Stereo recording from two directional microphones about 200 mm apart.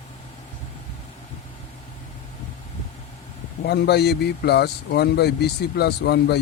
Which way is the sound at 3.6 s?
55° left (ahead or behind).